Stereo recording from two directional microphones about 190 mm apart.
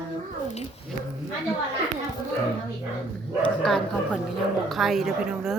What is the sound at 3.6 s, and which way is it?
A woman's voice, centre (ahead or behind).